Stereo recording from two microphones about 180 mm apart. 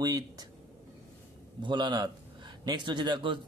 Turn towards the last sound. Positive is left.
turn(degrees=-25)  # may be behind; listen again after turning